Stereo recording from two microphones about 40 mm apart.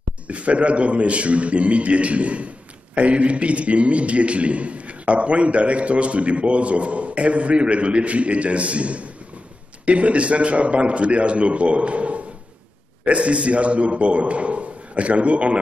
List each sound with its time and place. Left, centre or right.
0.3 s a man's voice: right